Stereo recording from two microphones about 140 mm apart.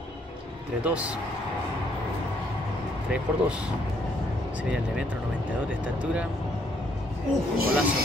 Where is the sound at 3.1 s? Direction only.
5° right (ahead or behind).